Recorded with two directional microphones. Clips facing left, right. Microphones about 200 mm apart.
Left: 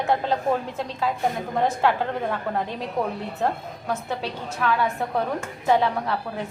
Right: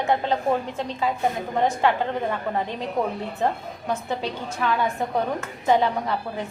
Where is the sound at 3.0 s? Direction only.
20° right (ahead or behind).